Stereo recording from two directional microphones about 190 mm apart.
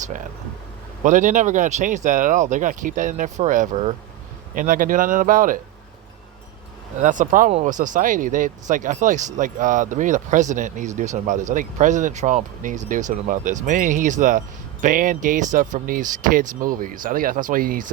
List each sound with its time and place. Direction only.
1.0 s speech: 40° right (ahead or behind)
7.0 s speech: 40° right (ahead or behind)